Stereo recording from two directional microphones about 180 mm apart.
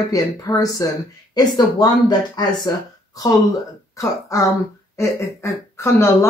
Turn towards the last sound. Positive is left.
turn(degrees=15)  # may be behind; listen again after turning